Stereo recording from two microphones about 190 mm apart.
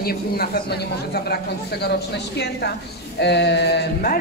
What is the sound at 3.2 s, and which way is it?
Speech, 60° left (ahead or behind).